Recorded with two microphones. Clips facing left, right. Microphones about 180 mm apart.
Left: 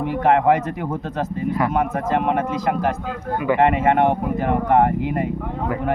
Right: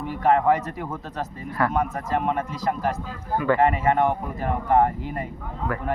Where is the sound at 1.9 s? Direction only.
70° left (ahead or behind).